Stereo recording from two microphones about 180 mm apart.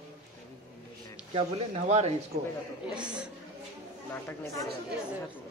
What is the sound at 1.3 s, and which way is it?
Speech, 35° right (ahead or behind).